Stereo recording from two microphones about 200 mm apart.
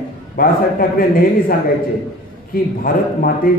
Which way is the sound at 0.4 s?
45° left (ahead or behind).